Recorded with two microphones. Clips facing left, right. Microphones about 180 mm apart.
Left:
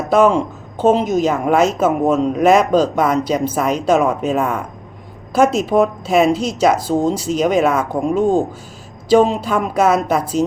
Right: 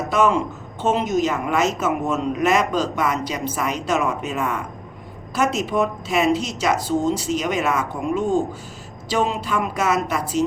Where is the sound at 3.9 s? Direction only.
50° left (ahead or behind).